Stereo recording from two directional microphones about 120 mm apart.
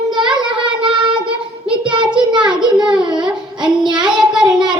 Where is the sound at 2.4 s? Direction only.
40° right (ahead or behind).